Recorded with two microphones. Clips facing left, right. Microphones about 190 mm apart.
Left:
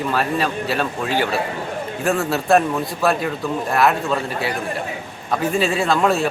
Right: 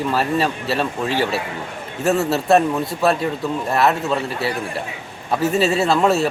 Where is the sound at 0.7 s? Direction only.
Centre (ahead or behind).